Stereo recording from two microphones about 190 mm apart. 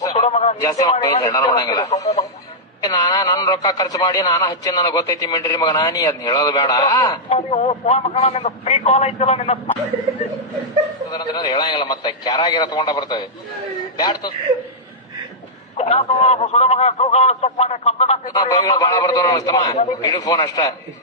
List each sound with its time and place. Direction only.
0.1 s a sound: 35° left (ahead or behind)
0.6 s a man's voice: 15° left (ahead or behind)
7.3 s a man's voice: 35° left (ahead or behind)
11.1 s a man's voice: 20° left (ahead or behind)
15.8 s a man's voice: 35° left (ahead or behind)
18.3 s a man's voice: 20° left (ahead or behind)